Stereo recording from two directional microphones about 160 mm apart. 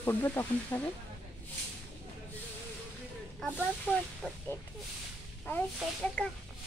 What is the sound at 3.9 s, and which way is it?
Speech, 10° left (ahead or behind).